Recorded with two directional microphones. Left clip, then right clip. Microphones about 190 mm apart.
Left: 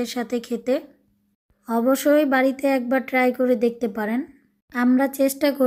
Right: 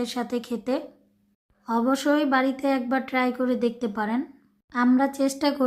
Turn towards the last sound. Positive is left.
turn(degrees=15)  # may be behind; listen again after turning